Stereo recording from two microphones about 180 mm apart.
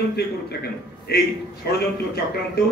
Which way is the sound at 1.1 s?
60° left (ahead or behind).